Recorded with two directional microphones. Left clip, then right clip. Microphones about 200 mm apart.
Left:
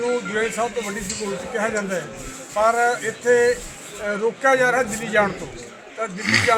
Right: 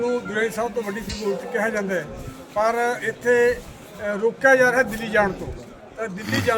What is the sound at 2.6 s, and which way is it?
A man's voice, 20° right (ahead or behind).